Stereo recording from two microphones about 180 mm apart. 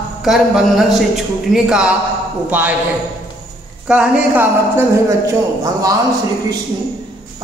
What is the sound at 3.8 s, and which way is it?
Speech, 5° right (ahead or behind).